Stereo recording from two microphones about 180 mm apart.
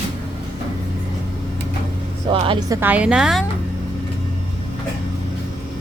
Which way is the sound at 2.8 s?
10° right (ahead or behind).